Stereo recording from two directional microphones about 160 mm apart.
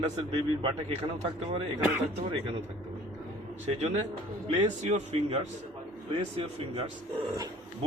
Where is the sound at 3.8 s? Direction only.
45° right (ahead or behind).